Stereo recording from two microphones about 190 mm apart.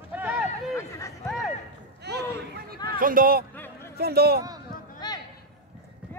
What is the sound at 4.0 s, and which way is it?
Speech, 55° right (ahead or behind).